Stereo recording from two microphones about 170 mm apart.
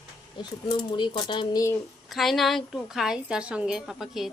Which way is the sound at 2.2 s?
Centre (ahead or behind).